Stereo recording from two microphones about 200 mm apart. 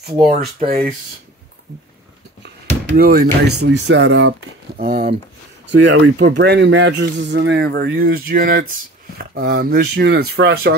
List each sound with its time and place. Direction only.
0.7 s speech: 50° right (ahead or behind)
3.0 s speech: 50° right (ahead or behind)
3.5 s speech: 60° right (ahead or behind); by 4.4 s 80° right
4.7 s speech: 50° right (ahead or behind)
5.7 s speech: 65° right (ahead or behind)